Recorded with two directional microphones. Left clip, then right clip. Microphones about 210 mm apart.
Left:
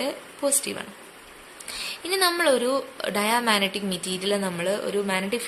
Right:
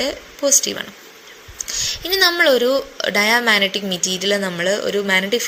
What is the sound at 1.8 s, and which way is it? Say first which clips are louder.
A woman's voice: right 7 dB; 15° right (ahead or behind).